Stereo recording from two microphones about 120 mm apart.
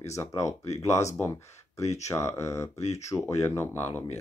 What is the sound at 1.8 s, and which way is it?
Speech, 70° left (ahead or behind).